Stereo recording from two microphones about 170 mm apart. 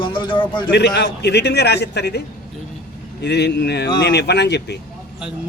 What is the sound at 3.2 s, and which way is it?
A man's voice, 80° left.